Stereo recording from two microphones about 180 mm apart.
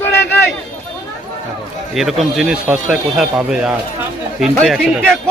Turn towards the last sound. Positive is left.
turn(degrees=0)  # may be behind; listen again after turning